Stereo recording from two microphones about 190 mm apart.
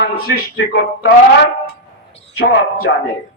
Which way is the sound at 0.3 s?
50° left (ahead or behind).